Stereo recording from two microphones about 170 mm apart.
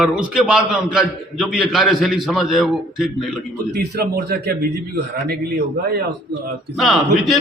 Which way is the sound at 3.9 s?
65° right (ahead or behind).